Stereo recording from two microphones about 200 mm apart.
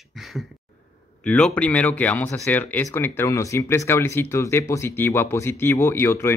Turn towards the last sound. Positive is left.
turn(degrees=10)  # may be behind; listen again after turning